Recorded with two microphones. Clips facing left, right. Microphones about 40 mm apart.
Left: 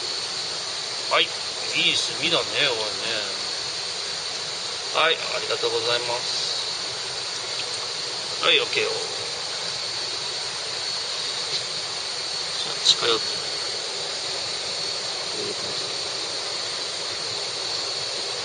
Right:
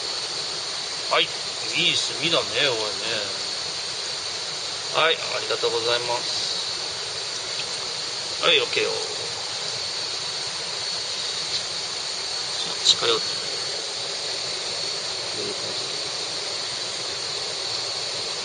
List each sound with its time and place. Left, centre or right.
1.1 s speech: centre
4.9 s speech: centre
8.4 s speech: centre
12.8 s speech: centre